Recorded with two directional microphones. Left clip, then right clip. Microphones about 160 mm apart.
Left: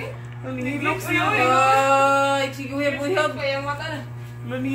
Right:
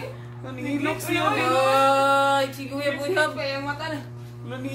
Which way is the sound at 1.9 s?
90° right.